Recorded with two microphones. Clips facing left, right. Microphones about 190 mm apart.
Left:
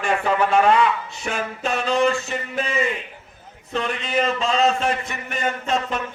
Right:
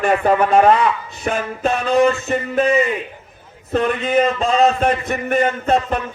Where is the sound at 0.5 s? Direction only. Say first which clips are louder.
Right 4 dB; 35° right (ahead or behind).